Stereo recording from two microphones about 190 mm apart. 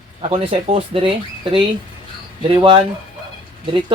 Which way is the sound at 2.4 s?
25° right (ahead or behind).